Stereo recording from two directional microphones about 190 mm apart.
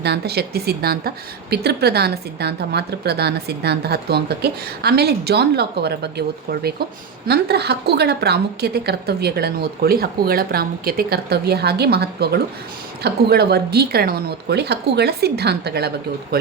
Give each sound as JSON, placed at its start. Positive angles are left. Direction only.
{"t": 0.0, "sound": "a woman's voice", "side_deg": -60}